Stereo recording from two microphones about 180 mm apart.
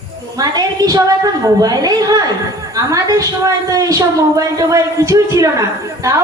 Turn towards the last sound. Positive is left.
turn(degrees=-15)  # may be behind; listen again after turning